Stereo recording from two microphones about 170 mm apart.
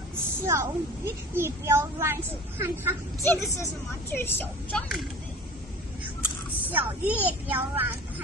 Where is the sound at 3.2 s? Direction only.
15° left (ahead or behind).